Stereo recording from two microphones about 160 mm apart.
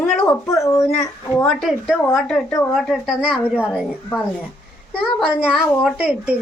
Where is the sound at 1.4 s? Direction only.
Centre (ahead or behind).